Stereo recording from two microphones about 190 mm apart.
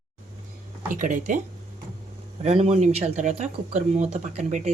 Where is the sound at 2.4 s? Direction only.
35° right (ahead or behind).